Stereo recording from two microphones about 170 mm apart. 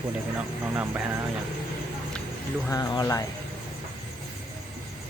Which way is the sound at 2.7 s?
20° left (ahead or behind).